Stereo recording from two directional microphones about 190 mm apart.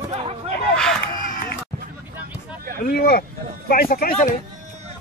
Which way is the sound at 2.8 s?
55° left (ahead or behind).